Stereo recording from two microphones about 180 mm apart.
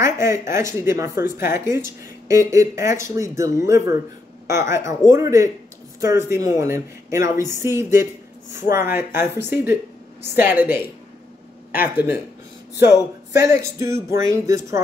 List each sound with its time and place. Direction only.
0.0 s speech: 15° right (ahead or behind)
11.8 s speech: 10° right (ahead or behind)